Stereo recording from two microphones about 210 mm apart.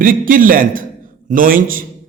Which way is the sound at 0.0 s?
40° right (ahead or behind).